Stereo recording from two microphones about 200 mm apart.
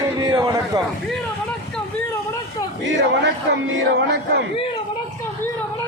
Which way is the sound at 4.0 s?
60° right (ahead or behind).